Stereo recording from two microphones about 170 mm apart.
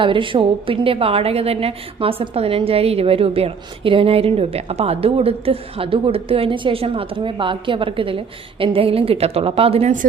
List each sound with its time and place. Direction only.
0.0 s a woman's voice: 30° right (ahead or behind)